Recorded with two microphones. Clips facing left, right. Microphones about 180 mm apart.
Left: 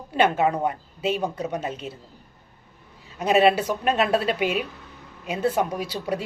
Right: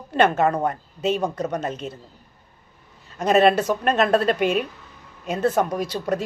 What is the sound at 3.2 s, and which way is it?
Speech, 5° left (ahead or behind).